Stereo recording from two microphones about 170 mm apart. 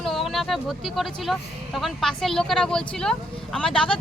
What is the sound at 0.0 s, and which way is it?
Speech, centre (ahead or behind).